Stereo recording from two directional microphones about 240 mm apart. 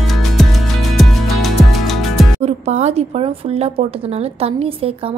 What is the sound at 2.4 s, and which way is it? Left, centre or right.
Speech, right.